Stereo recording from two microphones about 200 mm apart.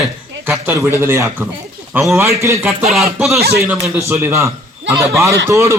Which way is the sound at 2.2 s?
15° right (ahead or behind).